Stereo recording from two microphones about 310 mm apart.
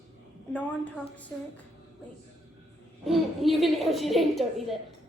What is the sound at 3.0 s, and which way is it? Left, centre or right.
A woman's voice, centre.